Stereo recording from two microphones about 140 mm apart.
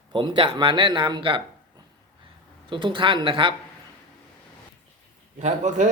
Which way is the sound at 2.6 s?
35° right (ahead or behind).